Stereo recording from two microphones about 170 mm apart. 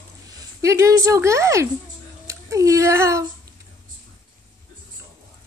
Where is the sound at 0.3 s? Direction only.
20° right (ahead or behind).